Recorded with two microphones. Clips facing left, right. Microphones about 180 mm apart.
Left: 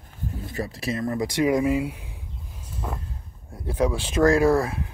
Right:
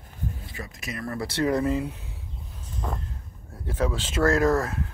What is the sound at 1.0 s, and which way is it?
Speech, 15° left (ahead or behind).